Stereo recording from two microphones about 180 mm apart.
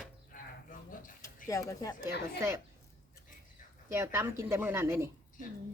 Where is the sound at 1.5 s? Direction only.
20° left (ahead or behind).